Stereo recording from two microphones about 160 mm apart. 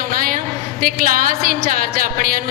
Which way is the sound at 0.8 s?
60° right (ahead or behind).